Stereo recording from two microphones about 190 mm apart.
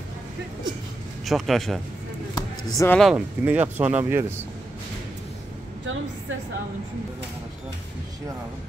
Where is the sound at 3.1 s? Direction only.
10° right (ahead or behind).